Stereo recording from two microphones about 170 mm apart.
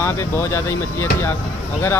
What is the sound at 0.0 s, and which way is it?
Speech, 15° left (ahead or behind).